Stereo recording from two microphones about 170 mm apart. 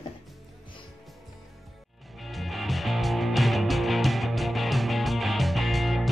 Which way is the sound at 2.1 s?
Centre (ahead or behind).